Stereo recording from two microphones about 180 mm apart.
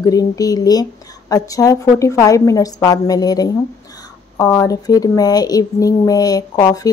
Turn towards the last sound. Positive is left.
turn(degrees=20)  # may be behind; listen again after turning